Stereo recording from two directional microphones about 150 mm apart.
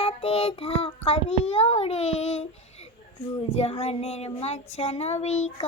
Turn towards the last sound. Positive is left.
turn(degrees=45)  # may be behind; listen again after turning